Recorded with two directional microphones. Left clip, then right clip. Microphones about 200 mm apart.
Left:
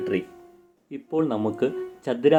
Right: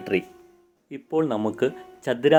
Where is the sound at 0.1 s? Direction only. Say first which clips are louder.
Right 3 dB; 25° right (ahead or behind).